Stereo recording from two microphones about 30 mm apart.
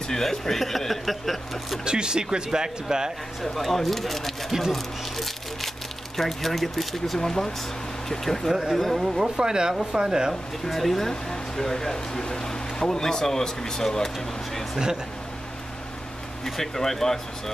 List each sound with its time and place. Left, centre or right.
0.1 s speech: centre
1.9 s speech: right
3.5 s speech: centre
4.5 s speech: centre
4.7 s speech: centre
7.2 s speech: centre
9.0 s speech: centre
9.4 s speech: right
10.7 s speech: centre
16.4 s speech: centre